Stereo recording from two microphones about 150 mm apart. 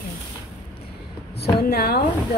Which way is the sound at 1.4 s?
90° left.